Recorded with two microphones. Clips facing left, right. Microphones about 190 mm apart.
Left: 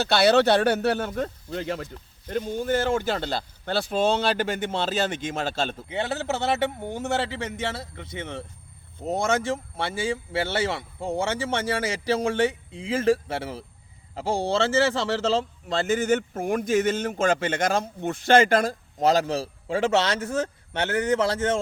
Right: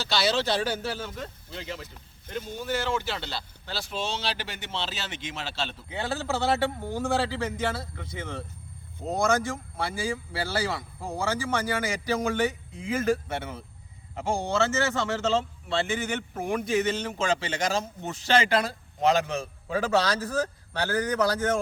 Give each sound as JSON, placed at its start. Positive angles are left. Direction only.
{"t": 0.0, "sound": "speech", "side_deg": 60}
{"t": 5.9, "sound": "speech", "side_deg": 25}